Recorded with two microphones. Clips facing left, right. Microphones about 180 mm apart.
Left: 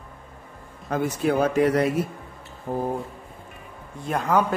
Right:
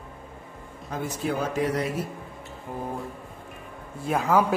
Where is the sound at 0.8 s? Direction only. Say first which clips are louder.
Left 6 dB; 65° left (ahead or behind).